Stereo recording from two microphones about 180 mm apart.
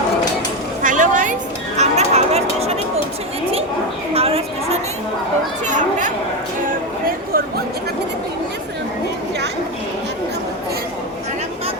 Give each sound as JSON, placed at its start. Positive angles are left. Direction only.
{"t": 0.8, "sound": "music", "side_deg": -45}
{"t": 4.1, "sound": "a sound", "side_deg": -35}
{"t": 5.6, "sound": "children playing", "side_deg": -45}